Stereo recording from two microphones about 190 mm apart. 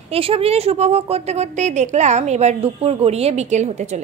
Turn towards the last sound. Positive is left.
turn(degrees=-35)  # may be behind; listen again after turning